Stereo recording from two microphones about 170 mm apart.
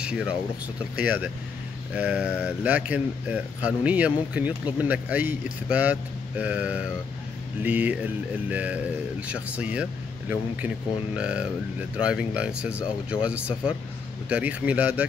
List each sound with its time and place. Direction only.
0.0 s speech: 5° right (ahead or behind)
11.1 s speech: 5° right (ahead or behind)